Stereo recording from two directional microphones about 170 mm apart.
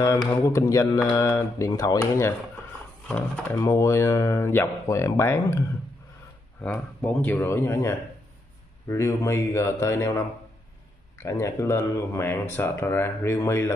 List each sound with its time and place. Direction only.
0.4 s speech: 15° left (ahead or behind)
6.6 s speech: 10° left (ahead or behind)
11.2 s speech: 15° left (ahead or behind)